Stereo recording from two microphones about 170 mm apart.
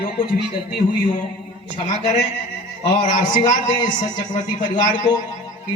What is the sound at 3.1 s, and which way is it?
A man's voice, 50° left (ahead or behind).